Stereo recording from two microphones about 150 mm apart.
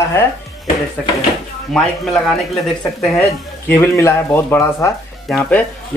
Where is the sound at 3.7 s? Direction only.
15° left (ahead or behind).